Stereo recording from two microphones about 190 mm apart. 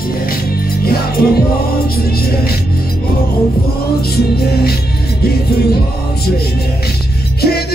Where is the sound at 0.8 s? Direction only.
55° left (ahead or behind).